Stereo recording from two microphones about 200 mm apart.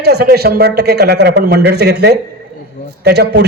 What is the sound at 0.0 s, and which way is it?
A man's voice, 55° right (ahead or behind).